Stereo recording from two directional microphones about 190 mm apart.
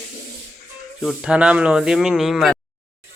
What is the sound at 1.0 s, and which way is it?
Speech, 5° right (ahead or behind).